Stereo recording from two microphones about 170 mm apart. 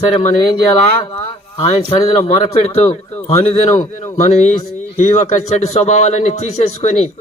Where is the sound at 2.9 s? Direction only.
20° left (ahead or behind).